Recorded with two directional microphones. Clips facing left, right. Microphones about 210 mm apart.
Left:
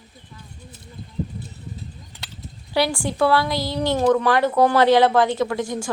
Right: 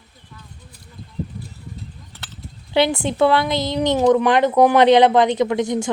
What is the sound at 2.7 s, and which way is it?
A woman's voice, 20° right (ahead or behind).